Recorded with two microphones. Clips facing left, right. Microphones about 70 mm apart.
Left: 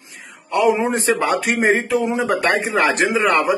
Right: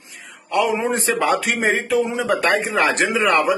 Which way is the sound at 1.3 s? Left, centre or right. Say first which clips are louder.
Left 2 dB; centre.